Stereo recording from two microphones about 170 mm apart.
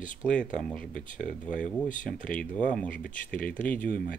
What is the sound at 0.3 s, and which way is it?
Speech, 5° left (ahead or behind).